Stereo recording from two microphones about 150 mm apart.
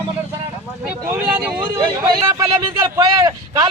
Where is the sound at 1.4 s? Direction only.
5° right (ahead or behind).